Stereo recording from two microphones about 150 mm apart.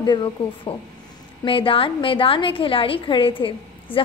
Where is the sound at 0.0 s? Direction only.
30° left (ahead or behind).